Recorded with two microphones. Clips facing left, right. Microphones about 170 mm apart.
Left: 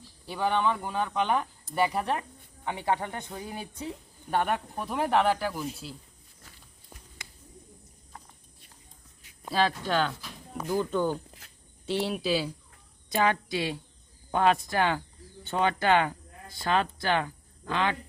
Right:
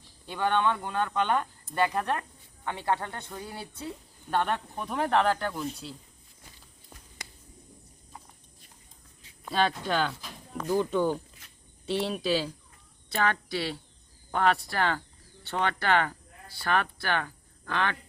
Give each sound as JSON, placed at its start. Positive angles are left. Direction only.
{"t": 0.3, "sound": "speech", "side_deg": 5}
{"t": 9.5, "sound": "speech", "side_deg": 0}